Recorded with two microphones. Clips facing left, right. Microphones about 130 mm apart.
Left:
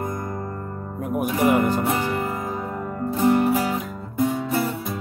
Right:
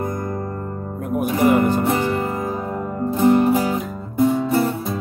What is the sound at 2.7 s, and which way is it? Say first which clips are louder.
Music: right 4 dB; 20° right (ahead or behind).